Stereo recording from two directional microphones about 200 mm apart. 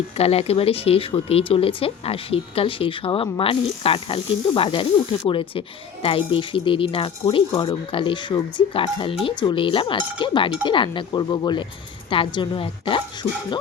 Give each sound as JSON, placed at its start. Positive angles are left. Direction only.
{"t": 0.2, "sound": "speech", "side_deg": 30}